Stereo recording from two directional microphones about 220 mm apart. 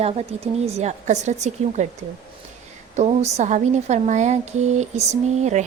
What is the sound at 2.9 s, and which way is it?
Speech, 30° right (ahead or behind).